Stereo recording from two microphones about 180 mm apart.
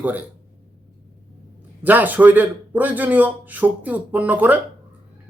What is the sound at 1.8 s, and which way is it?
Speech, 10° right (ahead or behind).